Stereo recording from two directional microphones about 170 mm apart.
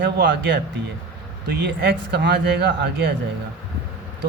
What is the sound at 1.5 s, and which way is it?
Speech, 90° right.